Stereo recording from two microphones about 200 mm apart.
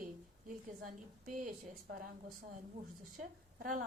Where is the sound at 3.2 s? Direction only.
40° right (ahead or behind).